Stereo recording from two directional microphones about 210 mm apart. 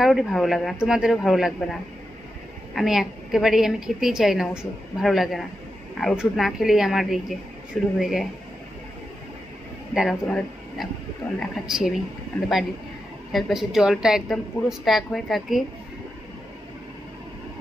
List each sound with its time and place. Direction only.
0.0 s a woman's voice: centre (ahead or behind)
9.9 s a woman's voice: 5° left (ahead or behind)
13.3 s a woman's voice: centre (ahead or behind)